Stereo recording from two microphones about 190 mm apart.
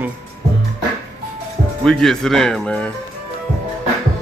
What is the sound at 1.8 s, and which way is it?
Speech, centre (ahead or behind).